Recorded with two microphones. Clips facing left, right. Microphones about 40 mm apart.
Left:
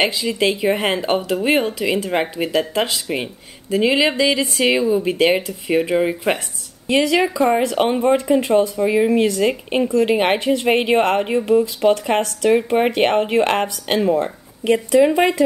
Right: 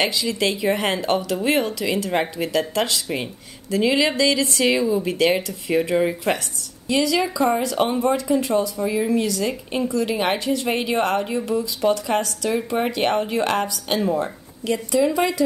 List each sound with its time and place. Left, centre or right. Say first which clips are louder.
0.0 s speech: left 3 dB; left